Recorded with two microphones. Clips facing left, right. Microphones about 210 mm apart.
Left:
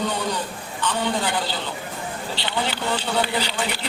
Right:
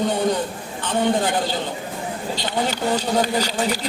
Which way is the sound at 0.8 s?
50° right (ahead or behind).